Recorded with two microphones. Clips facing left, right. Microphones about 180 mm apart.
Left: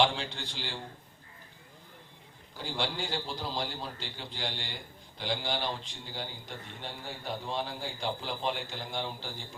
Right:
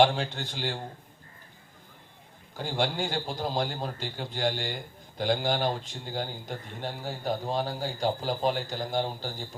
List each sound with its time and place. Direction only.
0.0 s a man's voice: 45° right (ahead or behind)
2.6 s a man's voice: 50° right (ahead or behind)